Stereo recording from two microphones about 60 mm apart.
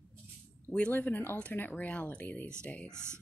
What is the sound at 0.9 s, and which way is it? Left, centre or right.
Speech, left.